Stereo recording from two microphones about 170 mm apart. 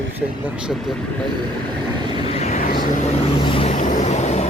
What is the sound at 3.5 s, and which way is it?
Vehicle, 30° left (ahead or behind).